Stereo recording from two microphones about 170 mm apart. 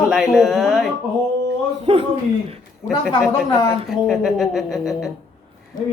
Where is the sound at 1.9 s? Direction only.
30° right (ahead or behind).